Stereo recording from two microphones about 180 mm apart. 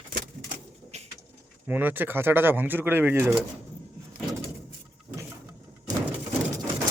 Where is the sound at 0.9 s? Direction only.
40° right (ahead or behind).